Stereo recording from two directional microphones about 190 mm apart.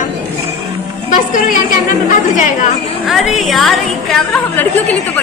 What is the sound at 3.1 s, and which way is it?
A woman's voice, centre (ahead or behind).